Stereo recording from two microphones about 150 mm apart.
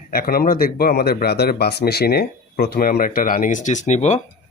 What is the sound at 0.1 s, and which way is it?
Speech, 80° left.